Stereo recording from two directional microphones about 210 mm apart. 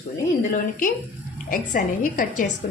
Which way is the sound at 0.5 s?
40° left (ahead or behind).